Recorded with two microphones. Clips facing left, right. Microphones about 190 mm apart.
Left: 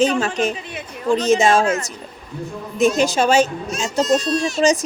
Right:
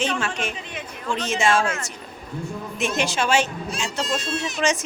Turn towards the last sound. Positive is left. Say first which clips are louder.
# left 7 dB
turn(degrees=-20)  # may be behind; listen again after turning